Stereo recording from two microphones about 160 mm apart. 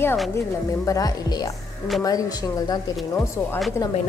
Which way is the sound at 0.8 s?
20° left (ahead or behind).